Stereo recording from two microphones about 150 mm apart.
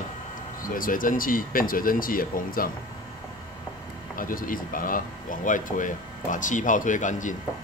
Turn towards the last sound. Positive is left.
turn(degrees=55)  # may be behind; listen again after turning